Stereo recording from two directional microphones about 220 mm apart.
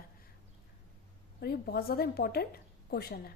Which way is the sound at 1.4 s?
45° left (ahead or behind).